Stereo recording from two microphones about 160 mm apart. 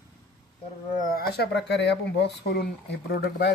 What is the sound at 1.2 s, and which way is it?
Speech, 90° left.